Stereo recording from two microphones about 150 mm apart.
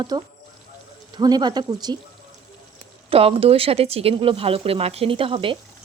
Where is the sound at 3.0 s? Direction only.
40° right (ahead or behind).